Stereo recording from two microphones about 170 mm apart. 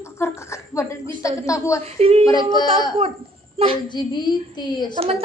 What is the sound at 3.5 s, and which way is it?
Speech, 35° right (ahead or behind).